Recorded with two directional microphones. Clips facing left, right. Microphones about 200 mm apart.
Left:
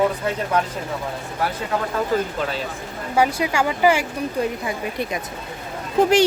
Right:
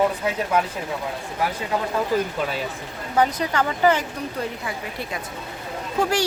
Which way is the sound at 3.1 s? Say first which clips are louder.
Left 1 dB; 10° left (ahead or behind).